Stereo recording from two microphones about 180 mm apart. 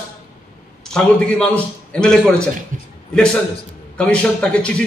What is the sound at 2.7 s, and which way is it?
Speech, 45° right (ahead or behind).